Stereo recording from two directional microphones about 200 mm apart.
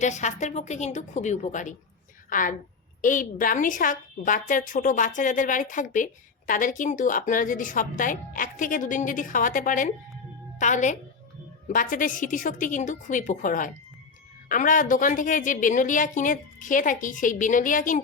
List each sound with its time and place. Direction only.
0.0 s a woman's voice: 35° left (ahead or behind)